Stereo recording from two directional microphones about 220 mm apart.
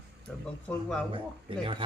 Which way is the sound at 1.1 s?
25° right (ahead or behind).